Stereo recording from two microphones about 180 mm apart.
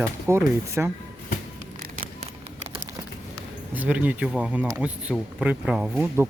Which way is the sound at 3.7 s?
10° right (ahead or behind).